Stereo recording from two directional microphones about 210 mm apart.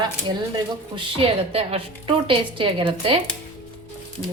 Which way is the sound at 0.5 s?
25° right (ahead or behind).